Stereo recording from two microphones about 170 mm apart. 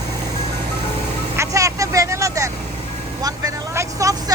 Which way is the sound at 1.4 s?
20° right (ahead or behind).